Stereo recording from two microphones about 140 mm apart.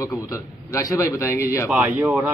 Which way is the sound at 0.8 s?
20° left (ahead or behind).